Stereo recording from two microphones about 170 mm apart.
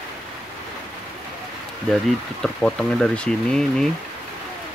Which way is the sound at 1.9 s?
5° left (ahead or behind).